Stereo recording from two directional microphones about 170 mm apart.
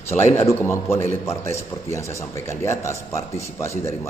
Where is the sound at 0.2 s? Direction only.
15° left (ahead or behind).